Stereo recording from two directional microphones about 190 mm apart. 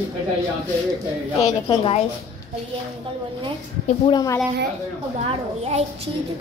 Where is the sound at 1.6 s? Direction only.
30° left (ahead or behind).